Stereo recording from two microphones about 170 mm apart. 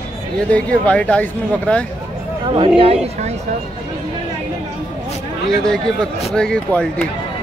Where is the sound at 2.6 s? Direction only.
35° right (ahead or behind).